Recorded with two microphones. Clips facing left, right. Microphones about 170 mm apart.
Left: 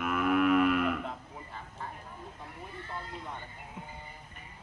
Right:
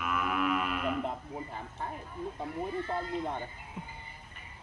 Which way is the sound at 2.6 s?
50° right (ahead or behind).